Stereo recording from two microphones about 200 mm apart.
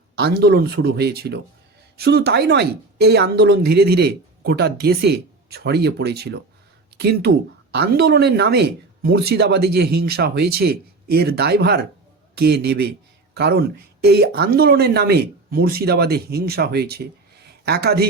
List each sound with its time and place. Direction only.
0.2 s speech: 55° right (ahead or behind)